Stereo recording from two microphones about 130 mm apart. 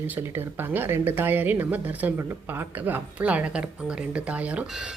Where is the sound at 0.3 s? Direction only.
15° right (ahead or behind).